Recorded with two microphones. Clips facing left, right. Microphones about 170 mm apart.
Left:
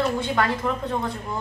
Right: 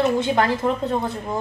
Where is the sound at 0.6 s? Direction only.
25° right (ahead or behind).